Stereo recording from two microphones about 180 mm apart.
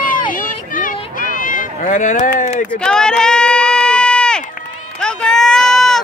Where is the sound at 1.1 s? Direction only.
50° left (ahead or behind).